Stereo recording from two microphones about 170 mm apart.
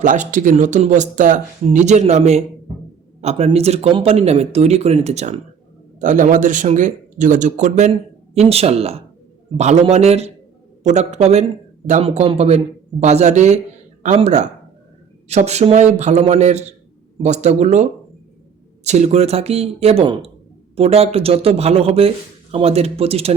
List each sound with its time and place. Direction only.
0.0 s speech: 50° right (ahead or behind)
18.9 s speech: 40° right (ahead or behind)